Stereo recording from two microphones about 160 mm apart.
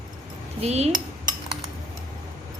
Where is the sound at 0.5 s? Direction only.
40° right (ahead or behind).